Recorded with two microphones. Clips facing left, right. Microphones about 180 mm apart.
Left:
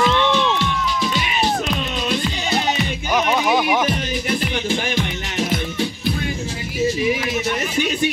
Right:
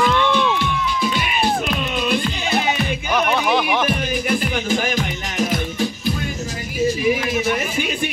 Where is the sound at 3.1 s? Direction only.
10° left (ahead or behind).